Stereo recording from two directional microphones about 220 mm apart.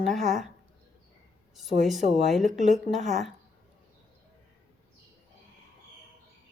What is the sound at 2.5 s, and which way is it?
Speech, 30° right (ahead or behind).